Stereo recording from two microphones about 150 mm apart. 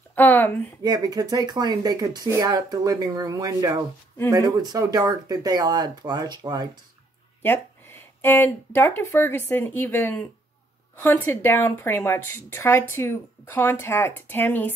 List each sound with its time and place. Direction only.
0.1 s a sound: 15° left (ahead or behind)
0.8 s speech: 25° right (ahead or behind)
7.4 s a woman's voice: 15° left (ahead or behind)